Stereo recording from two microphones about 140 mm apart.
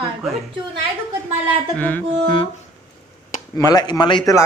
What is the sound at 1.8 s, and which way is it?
Speech, 10° left (ahead or behind).